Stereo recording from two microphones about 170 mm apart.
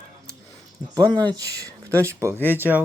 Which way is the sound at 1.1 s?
20° right (ahead or behind).